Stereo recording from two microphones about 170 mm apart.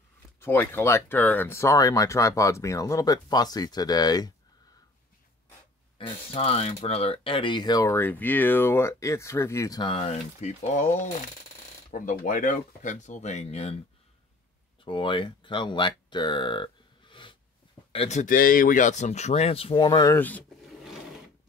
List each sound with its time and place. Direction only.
0.4 s speech: 10° left (ahead or behind)
5.9 s speech: 30° left (ahead or behind)
14.9 s speech: 30° left (ahead or behind)
17.9 s speech: 40° left (ahead or behind); by 20.4 s 10° left (ahead or behind)